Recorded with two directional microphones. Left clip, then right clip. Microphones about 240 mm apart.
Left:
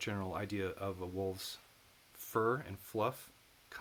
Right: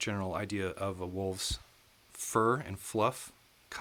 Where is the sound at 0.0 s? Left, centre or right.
Right.